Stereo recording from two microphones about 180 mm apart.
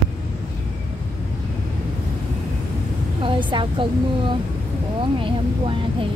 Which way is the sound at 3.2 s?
25° right (ahead or behind).